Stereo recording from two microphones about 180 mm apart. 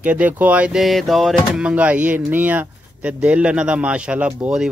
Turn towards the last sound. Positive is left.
turn(degrees=-5)  # may be behind; listen again after turning